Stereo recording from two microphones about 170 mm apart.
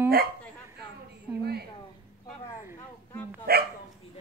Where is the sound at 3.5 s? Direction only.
65° right (ahead or behind).